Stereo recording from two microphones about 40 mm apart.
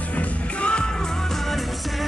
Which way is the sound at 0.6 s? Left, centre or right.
Left.